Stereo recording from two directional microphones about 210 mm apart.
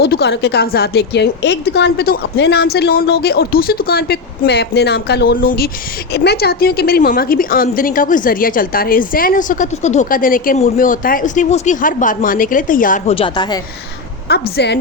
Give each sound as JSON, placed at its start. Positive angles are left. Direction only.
{"t": 0.0, "sound": "a woman's voice", "side_deg": 50}
{"t": 13.1, "sound": "a woman's voice", "side_deg": 25}
{"t": 14.3, "sound": "a woman's voice", "side_deg": 50}